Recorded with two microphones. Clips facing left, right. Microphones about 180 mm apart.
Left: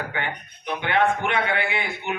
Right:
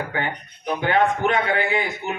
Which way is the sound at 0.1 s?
40° right (ahead or behind).